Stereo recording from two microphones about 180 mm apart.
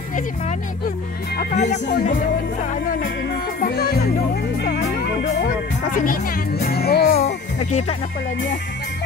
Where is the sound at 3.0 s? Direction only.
65° left (ahead or behind).